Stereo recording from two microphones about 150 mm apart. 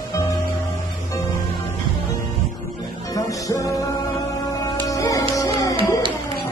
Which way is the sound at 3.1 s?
20° left (ahead or behind).